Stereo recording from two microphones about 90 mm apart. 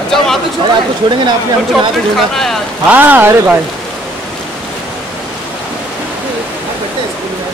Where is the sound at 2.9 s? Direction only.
20° right (ahead or behind).